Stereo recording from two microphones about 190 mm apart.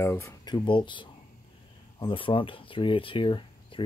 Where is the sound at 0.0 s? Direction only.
15° left (ahead or behind).